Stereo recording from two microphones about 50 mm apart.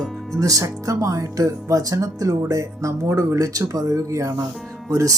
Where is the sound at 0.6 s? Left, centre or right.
Right.